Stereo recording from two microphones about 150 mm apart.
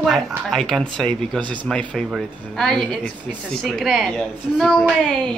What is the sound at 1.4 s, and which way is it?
Speech, 30° right (ahead or behind).